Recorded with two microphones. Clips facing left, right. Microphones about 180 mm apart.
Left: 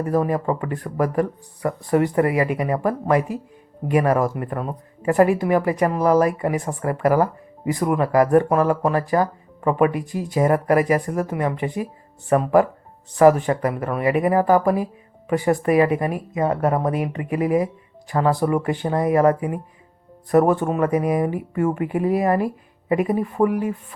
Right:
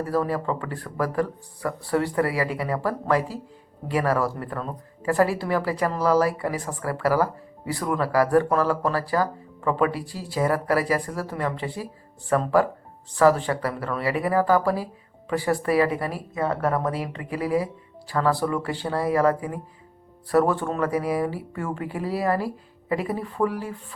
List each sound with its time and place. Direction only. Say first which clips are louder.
0.0 s speech: left 4 dB; 15° left (ahead or behind)